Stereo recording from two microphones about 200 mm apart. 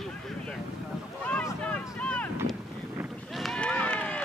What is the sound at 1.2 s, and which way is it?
Boat, 5° left (ahead or behind).